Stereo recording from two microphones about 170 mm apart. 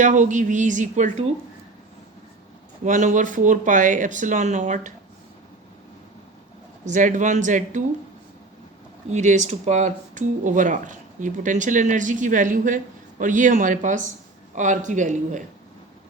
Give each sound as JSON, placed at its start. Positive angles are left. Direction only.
{"t": 0.0, "sound": "speech", "side_deg": -45}
{"t": 2.8, "sound": "speech", "side_deg": -50}
{"t": 6.8, "sound": "speech", "side_deg": -50}
{"t": 9.0, "sound": "speech", "side_deg": -45}